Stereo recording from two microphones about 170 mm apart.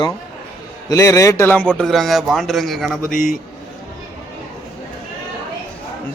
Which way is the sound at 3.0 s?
50° left (ahead or behind).